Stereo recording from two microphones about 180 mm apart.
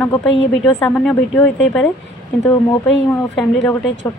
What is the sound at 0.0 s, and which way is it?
A woman's voice, 10° left (ahead or behind).